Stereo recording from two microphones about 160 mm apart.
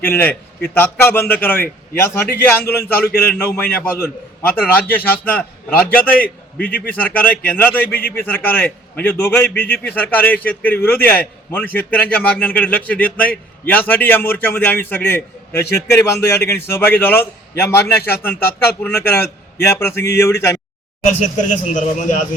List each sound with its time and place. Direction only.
0.0 s a man's voice: 10° left (ahead or behind)
21.7 s a man's voice: 50° left (ahead or behind)